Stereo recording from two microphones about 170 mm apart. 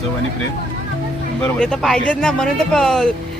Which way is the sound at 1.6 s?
5° left (ahead or behind).